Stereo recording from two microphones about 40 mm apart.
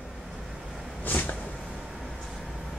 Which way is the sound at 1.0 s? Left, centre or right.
Left.